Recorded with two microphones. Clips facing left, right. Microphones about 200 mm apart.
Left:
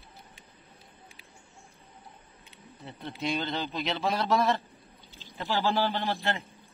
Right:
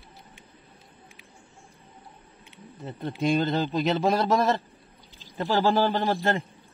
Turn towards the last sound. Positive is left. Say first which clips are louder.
# right 6 dB
turn(degrees=-45)  # may be behind; listen again after turning